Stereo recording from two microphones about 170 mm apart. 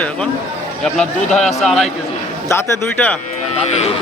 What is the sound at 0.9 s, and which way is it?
Speech, 5° left (ahead or behind).